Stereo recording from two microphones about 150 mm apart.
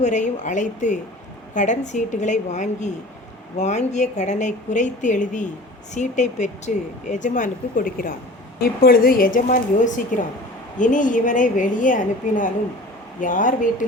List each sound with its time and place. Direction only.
0.0 s a woman's voice: 55° left (ahead or behind)